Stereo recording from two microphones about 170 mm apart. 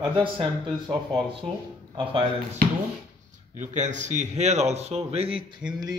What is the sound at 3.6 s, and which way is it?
A man's voice, 45° right (ahead or behind).